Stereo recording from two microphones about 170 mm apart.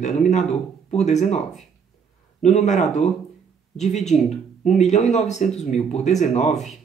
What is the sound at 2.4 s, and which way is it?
Speech, 45° left (ahead or behind).